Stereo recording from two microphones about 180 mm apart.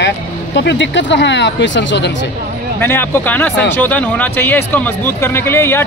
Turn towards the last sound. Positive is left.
turn(degrees=15)  # may be behind; listen again after turning